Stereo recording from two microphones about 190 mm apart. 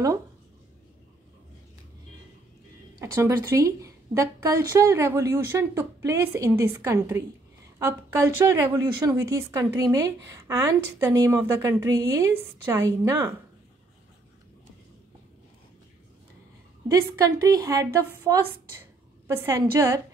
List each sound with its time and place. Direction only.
3.0 s a woman's voice: 15° right (ahead or behind)
16.8 s a woman's voice: 15° right (ahead or behind)
19.3 s a woman's voice: 15° right (ahead or behind)